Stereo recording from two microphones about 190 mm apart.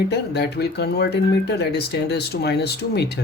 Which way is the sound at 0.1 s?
60° left (ahead or behind).